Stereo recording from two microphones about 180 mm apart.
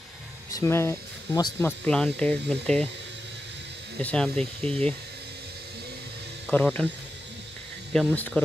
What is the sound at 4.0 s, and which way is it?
Speech, 5° left (ahead or behind).